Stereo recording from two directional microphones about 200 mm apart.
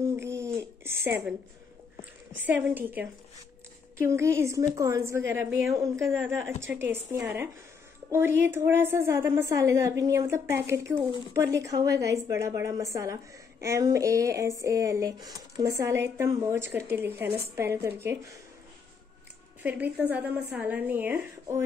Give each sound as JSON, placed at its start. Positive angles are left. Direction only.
{"t": 0.0, "sound": "a sound", "side_deg": -15}
{"t": 2.4, "sound": "a woman's voice", "side_deg": -10}
{"t": 19.6, "sound": "a woman's voice", "side_deg": -10}